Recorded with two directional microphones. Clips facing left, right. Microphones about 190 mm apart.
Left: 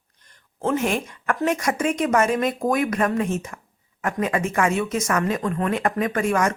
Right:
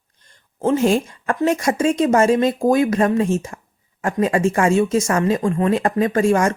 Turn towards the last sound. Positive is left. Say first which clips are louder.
# right 5 dB
turn(degrees=-30)  # may be behind; listen again after turning